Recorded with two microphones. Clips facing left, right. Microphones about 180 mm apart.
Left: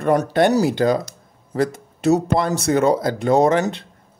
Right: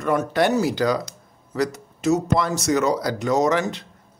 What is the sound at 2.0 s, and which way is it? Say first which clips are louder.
Speech: left 3 dB; 30° left (ahead or behind).